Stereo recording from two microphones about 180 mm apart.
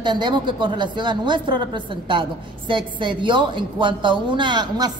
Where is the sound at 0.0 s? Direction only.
25° right (ahead or behind).